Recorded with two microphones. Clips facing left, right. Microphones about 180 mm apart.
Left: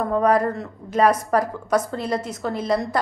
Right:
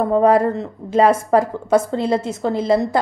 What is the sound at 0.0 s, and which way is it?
A woman's voice, 25° right (ahead or behind).